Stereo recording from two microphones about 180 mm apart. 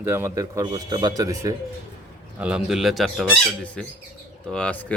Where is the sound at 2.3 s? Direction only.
5° right (ahead or behind).